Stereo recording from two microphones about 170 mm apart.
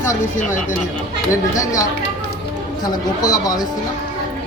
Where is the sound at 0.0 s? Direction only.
50° left (ahead or behind).